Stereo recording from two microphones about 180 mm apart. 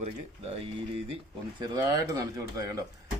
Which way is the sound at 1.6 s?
20° right (ahead or behind).